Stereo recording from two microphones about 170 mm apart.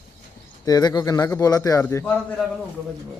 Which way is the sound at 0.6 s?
20° left (ahead or behind).